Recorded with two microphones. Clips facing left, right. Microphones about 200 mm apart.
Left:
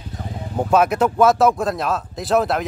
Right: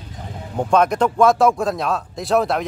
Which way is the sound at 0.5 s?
5° left (ahead or behind).